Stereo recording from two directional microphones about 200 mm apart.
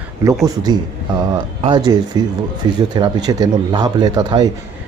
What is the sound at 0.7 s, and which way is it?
A man's voice, 20° right (ahead or behind).